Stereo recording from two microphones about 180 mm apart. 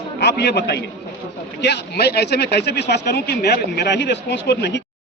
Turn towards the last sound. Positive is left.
turn(degrees=75)  # may be behind; listen again after turning